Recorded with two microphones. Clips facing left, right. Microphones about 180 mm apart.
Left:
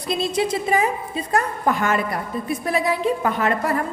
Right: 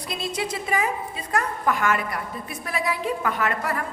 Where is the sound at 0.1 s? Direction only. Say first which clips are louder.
Left 8 dB; 25° left (ahead or behind).